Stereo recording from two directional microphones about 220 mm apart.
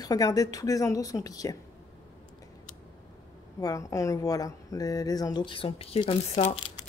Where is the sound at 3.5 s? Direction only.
15° left (ahead or behind).